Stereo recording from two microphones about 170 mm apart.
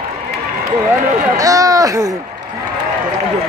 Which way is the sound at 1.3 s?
20° right (ahead or behind).